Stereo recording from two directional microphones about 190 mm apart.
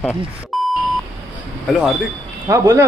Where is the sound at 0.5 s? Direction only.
Centre (ahead or behind).